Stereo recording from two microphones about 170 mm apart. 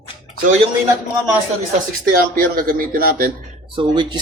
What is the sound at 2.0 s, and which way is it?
Speech, 60° right (ahead or behind).